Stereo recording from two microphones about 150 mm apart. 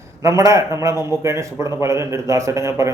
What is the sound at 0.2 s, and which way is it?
A man's voice, 20° right (ahead or behind).